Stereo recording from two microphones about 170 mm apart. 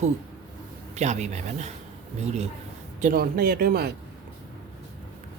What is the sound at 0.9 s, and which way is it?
A man's voice, 45° right (ahead or behind).